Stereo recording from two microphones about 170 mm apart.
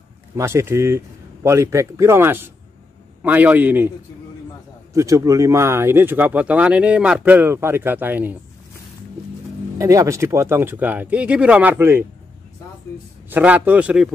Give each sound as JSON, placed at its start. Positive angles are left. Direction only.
{"t": 0.4, "sound": "speech", "side_deg": -15}
{"t": 4.9, "sound": "speech", "side_deg": -20}
{"t": 9.8, "sound": "speech", "side_deg": -20}
{"t": 13.3, "sound": "speech", "side_deg": -10}